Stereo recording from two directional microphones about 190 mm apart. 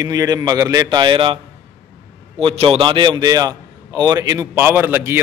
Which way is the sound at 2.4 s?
30° right (ahead or behind).